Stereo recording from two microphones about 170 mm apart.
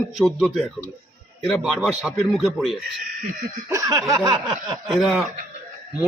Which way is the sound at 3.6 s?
20° right (ahead or behind).